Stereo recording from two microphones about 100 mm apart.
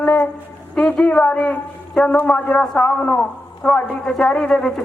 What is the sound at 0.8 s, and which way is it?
A man's voice, 10° left (ahead or behind).